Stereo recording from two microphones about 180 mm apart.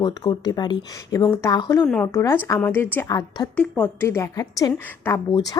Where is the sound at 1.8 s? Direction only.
5° left (ahead or behind).